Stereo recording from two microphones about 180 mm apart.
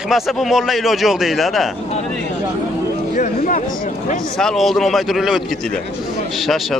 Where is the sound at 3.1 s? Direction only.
40° left (ahead or behind).